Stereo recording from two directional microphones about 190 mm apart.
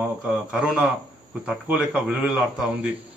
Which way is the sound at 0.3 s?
5° right (ahead or behind).